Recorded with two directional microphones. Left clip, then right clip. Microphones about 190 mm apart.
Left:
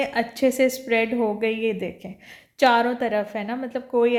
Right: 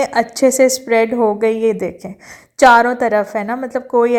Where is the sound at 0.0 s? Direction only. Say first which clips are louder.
Right 8 dB; 30° right (ahead or behind).